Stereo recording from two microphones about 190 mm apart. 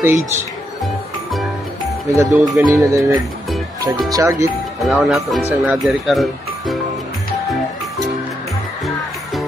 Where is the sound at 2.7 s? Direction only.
15° right (ahead or behind).